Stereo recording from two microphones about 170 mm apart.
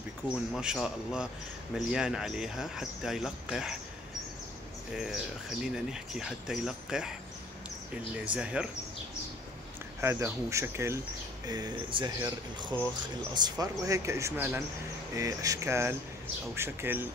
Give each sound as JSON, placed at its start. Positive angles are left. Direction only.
{"t": 0.2, "sound": "speech", "side_deg": -10}
{"t": 4.9, "sound": "speech", "side_deg": -5}
{"t": 8.3, "sound": "speech", "side_deg": -5}
{"t": 9.9, "sound": "speech", "side_deg": -15}